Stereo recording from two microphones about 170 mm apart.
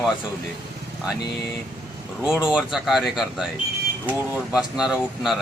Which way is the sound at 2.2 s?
5° right (ahead or behind).